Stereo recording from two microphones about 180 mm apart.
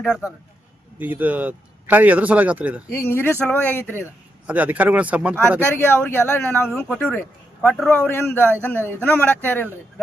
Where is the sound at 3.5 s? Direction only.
10° left (ahead or behind).